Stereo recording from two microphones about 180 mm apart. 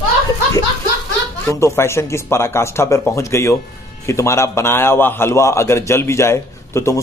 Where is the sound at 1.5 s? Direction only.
15° left (ahead or behind).